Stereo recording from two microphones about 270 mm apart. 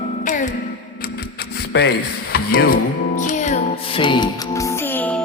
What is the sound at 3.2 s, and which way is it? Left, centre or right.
Music, left.